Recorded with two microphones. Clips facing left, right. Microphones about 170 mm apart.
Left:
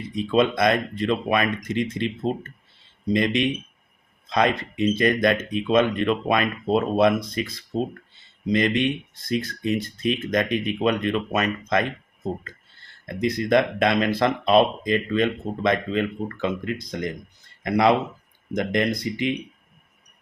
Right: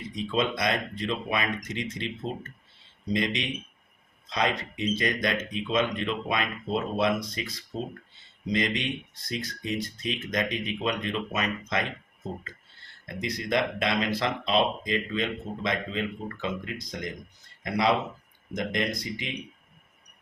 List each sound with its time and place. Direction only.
0.2 s speech: 55° left (ahead or behind)
8.5 s speech: 55° left (ahead or behind)
13.1 s speech: 55° left (ahead or behind)